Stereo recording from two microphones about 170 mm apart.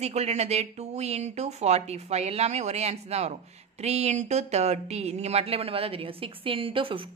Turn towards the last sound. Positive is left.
turn(degrees=-30)  # may be behind; listen again after turning